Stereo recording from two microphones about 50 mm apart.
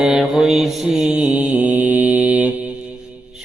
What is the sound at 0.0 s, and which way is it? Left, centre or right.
Mantra, centre.